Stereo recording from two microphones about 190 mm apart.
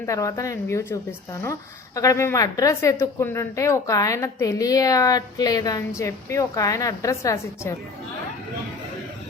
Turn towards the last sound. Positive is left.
turn(degrees=15)  # may be behind; listen again after turning